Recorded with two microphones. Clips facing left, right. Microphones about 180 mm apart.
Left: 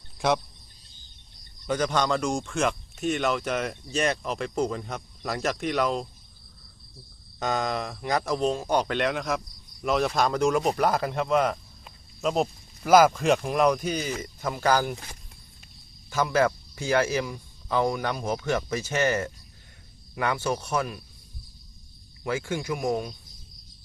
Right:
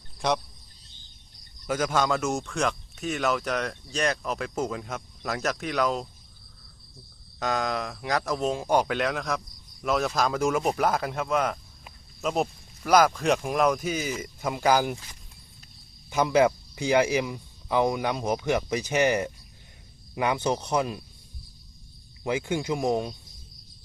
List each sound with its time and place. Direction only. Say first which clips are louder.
0.2 s speech: left 2 dB; 5° left (ahead or behind)
1.6 s speech: even; 5° right (ahead or behind)
7.3 s speech: even; centre (ahead or behind)
14.9 s speech: left 3 dB; 65° left (ahead or behind)
16.0 s speech: right 2 dB; 15° right (ahead or behind)
22.2 s speech: right 2 dB; 20° right (ahead or behind)